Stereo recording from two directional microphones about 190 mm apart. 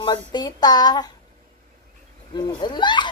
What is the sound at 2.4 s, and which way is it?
Speech, 25° left (ahead or behind).